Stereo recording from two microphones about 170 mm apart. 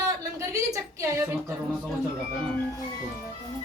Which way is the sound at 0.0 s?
20° right (ahead or behind).